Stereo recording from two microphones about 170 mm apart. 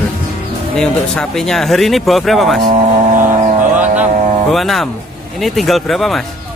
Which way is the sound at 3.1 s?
50° right (ahead or behind).